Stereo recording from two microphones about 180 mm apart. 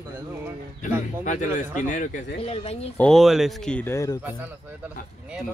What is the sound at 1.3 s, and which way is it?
Speech, 45° left (ahead or behind).